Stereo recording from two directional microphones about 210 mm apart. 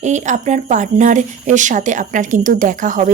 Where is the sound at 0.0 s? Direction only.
35° right (ahead or behind).